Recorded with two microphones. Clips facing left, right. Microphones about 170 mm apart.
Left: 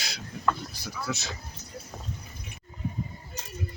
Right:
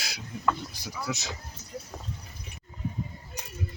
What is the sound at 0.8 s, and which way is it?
Speech, 15° right (ahead or behind).